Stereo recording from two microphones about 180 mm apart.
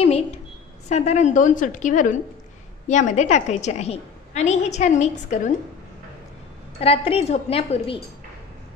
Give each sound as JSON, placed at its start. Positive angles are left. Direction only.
{"t": 0.0, "sound": "a sound", "side_deg": 35}
{"t": 0.8, "sound": "a woman's voice", "side_deg": 40}
{"t": 6.8, "sound": "a woman's voice", "side_deg": 35}